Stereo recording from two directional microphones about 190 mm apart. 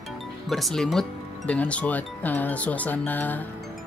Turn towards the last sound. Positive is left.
turn(degrees=10)  # may be behind; listen again after turning